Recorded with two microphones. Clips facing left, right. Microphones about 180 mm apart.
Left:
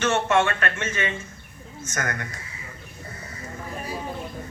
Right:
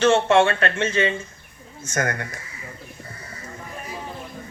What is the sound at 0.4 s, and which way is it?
Speech, 30° right (ahead or behind).